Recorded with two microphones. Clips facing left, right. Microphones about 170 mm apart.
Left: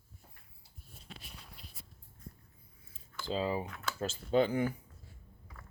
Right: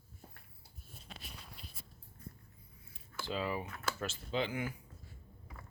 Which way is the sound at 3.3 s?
30° left (ahead or behind).